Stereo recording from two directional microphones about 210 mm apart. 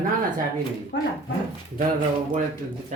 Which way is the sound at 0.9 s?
55° left (ahead or behind).